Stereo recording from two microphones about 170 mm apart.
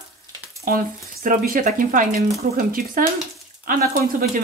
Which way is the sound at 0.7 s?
50° right (ahead or behind).